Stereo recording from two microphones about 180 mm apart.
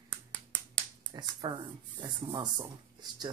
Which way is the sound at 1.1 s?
25° right (ahead or behind).